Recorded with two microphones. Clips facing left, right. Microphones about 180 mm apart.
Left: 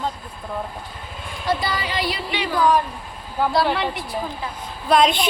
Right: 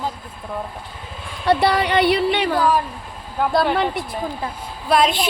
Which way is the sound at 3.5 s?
50° right (ahead or behind).